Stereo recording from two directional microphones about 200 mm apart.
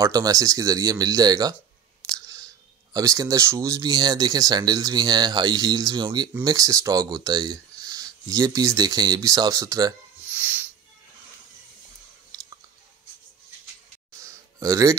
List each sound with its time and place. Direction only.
0.0 s speech: 20° right (ahead or behind)
10.2 s music: 10° right (ahead or behind)
14.2 s a sound: 15° right (ahead or behind)